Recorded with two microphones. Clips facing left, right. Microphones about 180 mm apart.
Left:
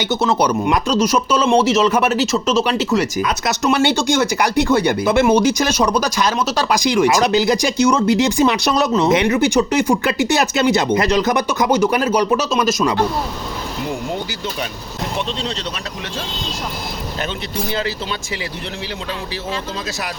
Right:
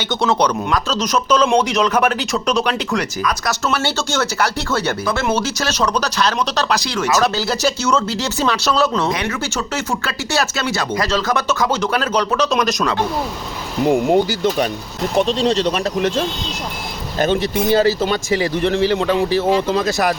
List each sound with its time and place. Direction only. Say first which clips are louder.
0.1 s speech: right 1 dB; 5° left (ahead or behind)
3.2 s speech: left 2 dB; 20° left (ahead or behind)
13.8 s speech: right 12 dB; 50° right (ahead or behind)
17.2 s speech: right 10 dB; 40° right (ahead or behind); by 19.8 s 70° right (ahead or behind)